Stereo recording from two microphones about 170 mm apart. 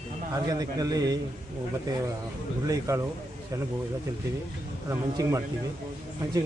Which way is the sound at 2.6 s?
20° right (ahead or behind).